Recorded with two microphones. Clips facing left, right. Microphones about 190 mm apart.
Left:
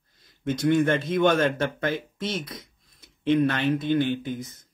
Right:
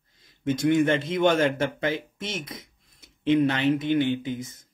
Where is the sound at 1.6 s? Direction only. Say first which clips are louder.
Even; 55° left (ahead or behind).